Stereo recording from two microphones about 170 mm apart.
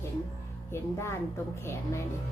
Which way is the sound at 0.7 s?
15° left (ahead or behind).